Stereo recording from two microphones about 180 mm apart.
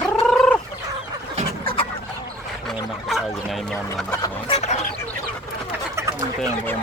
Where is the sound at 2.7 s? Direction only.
Centre (ahead or behind).